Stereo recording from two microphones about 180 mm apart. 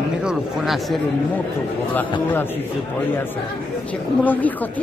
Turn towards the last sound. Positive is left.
turn(degrees=10)  # may be behind; listen again after turning